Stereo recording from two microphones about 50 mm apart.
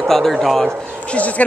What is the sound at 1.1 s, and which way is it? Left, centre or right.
Speech, left.